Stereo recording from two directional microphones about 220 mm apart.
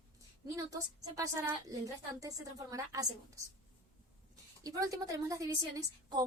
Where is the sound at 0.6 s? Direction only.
15° right (ahead or behind).